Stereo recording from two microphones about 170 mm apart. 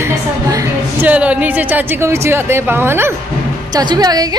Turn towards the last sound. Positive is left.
turn(degrees=-25)  # may be behind; listen again after turning